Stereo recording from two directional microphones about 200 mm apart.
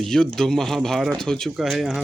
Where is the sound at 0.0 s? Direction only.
5° left (ahead or behind).